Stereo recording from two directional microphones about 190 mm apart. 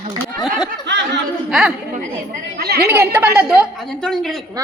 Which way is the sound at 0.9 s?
65° right (ahead or behind).